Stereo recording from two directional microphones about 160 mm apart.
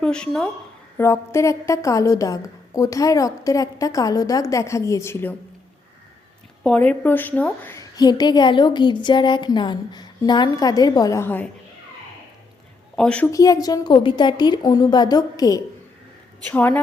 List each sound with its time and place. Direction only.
0.0 s speech: 5° left (ahead or behind)
0.9 s a woman's voice: 15° left (ahead or behind)
6.6 s a woman's voice: 5° left (ahead or behind)
13.0 s a woman's voice: 5° left (ahead or behind)
13.3 s a woman's voice: 20° left (ahead or behind)
16.5 s a woman's voice: 10° left (ahead or behind)